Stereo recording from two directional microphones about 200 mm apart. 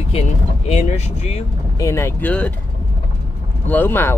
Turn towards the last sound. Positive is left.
turn(degrees=10)  # may be behind; listen again after turning